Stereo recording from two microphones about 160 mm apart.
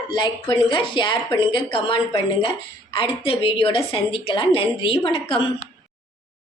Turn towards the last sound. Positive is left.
turn(degrees=35)  # may be behind; listen again after turning